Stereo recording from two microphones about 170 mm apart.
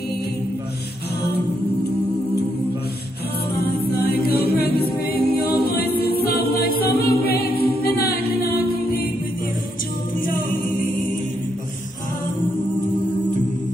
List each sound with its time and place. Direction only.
3.5 s a capella: 70° left (ahead or behind)